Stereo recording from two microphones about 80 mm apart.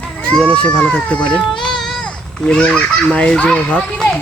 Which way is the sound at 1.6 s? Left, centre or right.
Centre.